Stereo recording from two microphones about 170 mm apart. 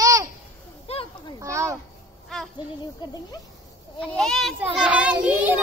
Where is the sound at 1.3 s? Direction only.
15° right (ahead or behind).